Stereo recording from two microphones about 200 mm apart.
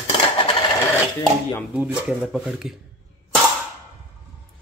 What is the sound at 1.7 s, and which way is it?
Speech, 5° right (ahead or behind).